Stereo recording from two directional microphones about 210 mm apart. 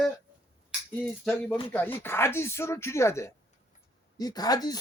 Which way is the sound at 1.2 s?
5° left (ahead or behind).